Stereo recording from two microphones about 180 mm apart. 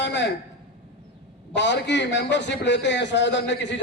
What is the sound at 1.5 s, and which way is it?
A man's voice, 80° left.